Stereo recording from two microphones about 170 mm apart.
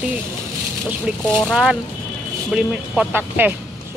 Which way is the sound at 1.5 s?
5° right (ahead or behind).